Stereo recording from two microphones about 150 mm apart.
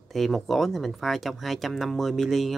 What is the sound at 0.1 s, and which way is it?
Speech, centre (ahead or behind).